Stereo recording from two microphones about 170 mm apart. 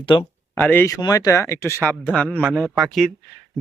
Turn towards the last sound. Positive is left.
turn(degrees=0)  # may be behind; listen again after turning